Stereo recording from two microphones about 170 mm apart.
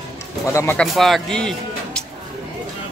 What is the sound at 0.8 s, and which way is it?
Speech, centre (ahead or behind).